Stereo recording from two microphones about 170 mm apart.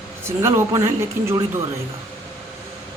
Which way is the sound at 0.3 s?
15° right (ahead or behind).